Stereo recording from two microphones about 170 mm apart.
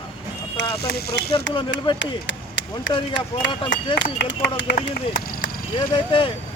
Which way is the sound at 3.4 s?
90° left.